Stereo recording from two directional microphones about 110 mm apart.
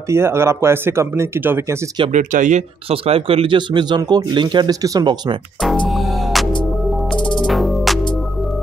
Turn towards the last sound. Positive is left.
turn(degrees=0)  # may be behind; listen again after turning